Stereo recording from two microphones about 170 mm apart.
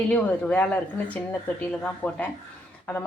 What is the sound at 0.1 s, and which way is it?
A woman's voice, 10° left (ahead or behind).